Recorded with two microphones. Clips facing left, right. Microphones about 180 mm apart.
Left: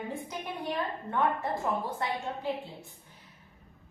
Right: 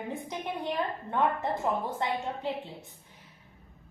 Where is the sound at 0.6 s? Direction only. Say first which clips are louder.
Right 1 dB; 20° right (ahead or behind).